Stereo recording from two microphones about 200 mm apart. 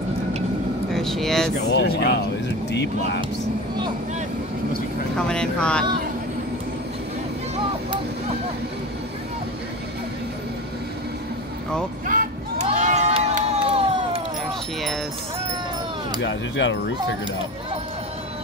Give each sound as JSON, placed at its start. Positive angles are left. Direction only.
{"t": 0.9, "sound": "speech", "side_deg": 0}
{"t": 1.7, "sound": "speech", "side_deg": 55}
{"t": 5.1, "sound": "speech", "side_deg": 5}
{"t": 12.1, "sound": "a sound", "side_deg": -45}
{"t": 12.6, "sound": "crowd", "side_deg": -35}
{"t": 16.2, "sound": "speech", "side_deg": 65}